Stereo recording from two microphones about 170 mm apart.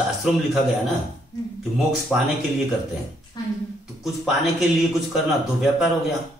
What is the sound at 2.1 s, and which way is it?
Speech, 5° right (ahead or behind).